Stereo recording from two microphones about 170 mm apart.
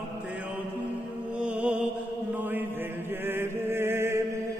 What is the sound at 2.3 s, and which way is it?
Chant, 10° right (ahead or behind).